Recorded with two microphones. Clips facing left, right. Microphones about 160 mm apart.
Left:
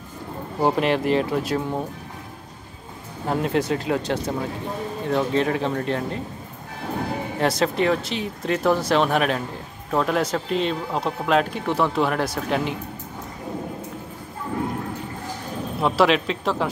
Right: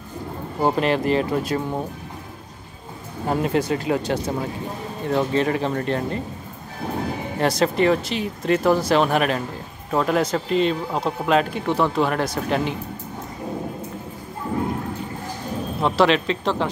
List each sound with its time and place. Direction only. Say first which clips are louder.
0.6 s speech: even; centre (ahead or behind)
3.3 s speech: right 1 dB; centre (ahead or behind)
7.3 s speech: right 2 dB; centre (ahead or behind)
15.8 s speech: even; 5° left (ahead or behind)